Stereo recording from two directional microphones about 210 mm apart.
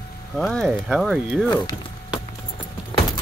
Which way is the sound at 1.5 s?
25° left (ahead or behind).